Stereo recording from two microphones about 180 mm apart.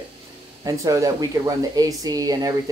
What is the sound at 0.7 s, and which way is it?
Speech, 20° right (ahead or behind).